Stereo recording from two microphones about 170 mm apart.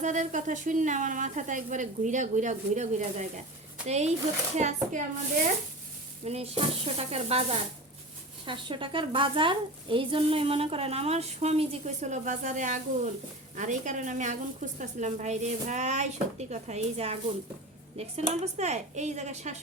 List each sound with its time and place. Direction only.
0.0 s a woman's voice: 45° right (ahead or behind)
6.2 s a woman's voice: 35° right (ahead or behind)